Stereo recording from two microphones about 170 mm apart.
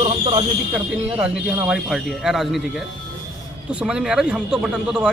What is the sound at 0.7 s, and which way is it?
Speech, 5° right (ahead or behind).